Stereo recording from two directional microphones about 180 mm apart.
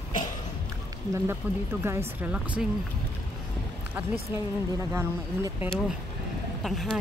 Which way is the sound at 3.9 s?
10° right (ahead or behind).